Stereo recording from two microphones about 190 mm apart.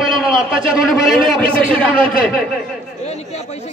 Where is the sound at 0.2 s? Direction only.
Centre (ahead or behind).